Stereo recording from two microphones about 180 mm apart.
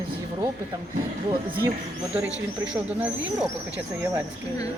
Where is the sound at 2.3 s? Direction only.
90° right.